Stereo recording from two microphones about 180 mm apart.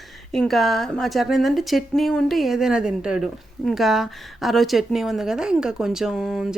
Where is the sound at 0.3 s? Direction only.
Centre (ahead or behind).